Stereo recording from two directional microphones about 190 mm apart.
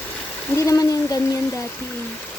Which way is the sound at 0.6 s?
20° left (ahead or behind).